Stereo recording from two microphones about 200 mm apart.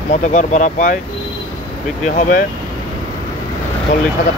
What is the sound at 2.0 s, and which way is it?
Speech, 40° left (ahead or behind).